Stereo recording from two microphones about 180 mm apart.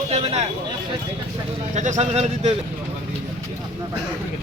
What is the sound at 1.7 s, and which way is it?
Speech, 40° right (ahead or behind).